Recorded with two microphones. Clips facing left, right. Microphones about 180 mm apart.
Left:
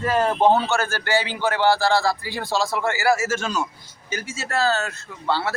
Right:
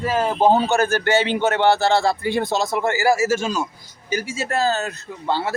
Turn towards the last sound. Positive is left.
turn(degrees=-15)  # may be behind; listen again after turning